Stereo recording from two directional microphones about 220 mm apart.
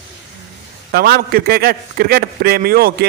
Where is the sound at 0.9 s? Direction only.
45° right (ahead or behind).